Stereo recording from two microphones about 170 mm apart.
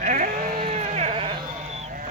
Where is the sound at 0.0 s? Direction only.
50° right (ahead or behind).